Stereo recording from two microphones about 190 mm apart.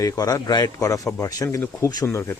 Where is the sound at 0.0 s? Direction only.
20° left (ahead or behind).